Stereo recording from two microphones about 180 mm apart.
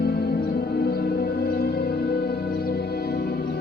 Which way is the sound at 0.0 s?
60° left (ahead or behind).